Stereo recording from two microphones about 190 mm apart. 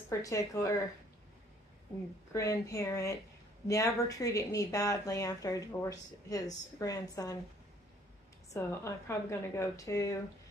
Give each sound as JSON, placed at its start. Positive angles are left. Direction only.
{"t": 0.1, "sound": "a woman's voice", "side_deg": 20}
{"t": 2.3, "sound": "a woman's voice", "side_deg": 15}
{"t": 8.5, "sound": "a woman's voice", "side_deg": 15}